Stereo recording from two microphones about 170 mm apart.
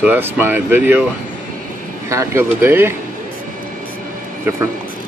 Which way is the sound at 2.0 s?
15° right (ahead or behind).